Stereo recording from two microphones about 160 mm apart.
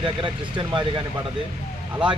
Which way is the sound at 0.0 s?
30° right (ahead or behind).